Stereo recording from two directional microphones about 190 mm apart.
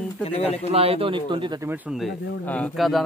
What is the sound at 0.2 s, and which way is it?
Speech, 30° left (ahead or behind).